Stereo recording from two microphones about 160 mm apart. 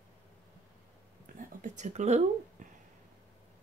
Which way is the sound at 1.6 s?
50° right (ahead or behind).